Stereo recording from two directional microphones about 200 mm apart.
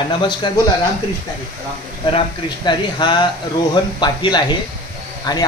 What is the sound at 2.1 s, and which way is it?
Speech, 20° left (ahead or behind).